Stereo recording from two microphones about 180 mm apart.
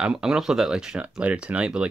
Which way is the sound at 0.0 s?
5° right (ahead or behind).